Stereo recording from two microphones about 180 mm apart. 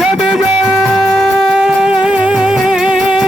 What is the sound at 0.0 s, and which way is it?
Music, 5° right (ahead or behind).